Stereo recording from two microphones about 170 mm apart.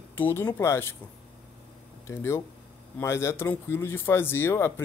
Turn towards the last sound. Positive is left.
turn(degrees=15)  # may be behind; listen again after turning